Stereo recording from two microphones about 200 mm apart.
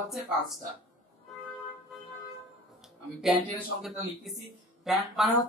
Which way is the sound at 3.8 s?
Centre (ahead or behind).